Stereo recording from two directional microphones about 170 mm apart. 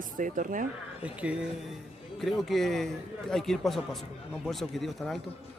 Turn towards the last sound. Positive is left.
turn(degrees=0)  # may be behind; listen again after turning